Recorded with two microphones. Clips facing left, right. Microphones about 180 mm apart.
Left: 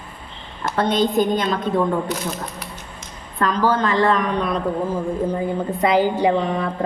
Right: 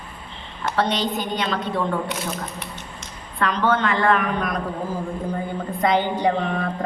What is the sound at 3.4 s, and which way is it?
A woman's voice, 35° left (ahead or behind).